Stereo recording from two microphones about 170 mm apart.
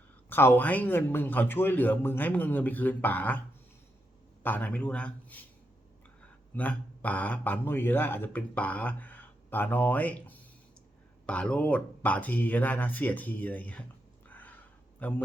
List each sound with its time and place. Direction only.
0.3 s speech: 10° left (ahead or behind)
4.4 s speech: 10° left (ahead or behind)
6.5 s speech: 10° left (ahead or behind)
14.3 s a sound: 10° left (ahead or behind)
15.0 s speech: 10° left (ahead or behind)